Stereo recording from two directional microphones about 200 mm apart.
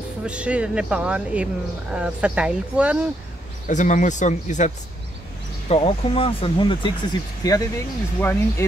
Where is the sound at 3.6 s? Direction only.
40° left (ahead or behind).